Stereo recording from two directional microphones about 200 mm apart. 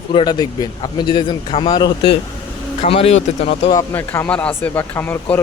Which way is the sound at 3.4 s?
20° left (ahead or behind).